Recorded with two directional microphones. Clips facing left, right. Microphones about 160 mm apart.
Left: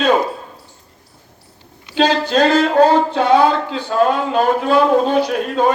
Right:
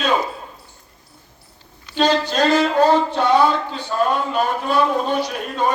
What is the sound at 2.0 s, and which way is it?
Speech, 55° left (ahead or behind).